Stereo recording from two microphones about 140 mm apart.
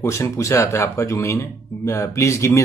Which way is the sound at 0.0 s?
20° left (ahead or behind).